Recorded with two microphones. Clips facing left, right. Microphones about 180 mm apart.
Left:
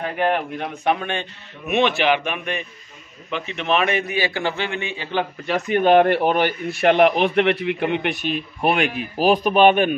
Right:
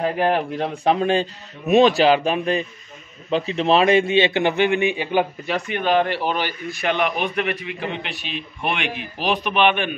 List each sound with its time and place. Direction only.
0.0 s a man's voice: 30° right (ahead or behind); by 5.2 s 15° right (ahead or behind)
5.7 s speech: 50° left (ahead or behind)